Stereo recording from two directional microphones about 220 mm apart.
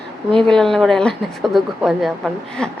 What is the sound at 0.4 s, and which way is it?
Speech, centre (ahead or behind).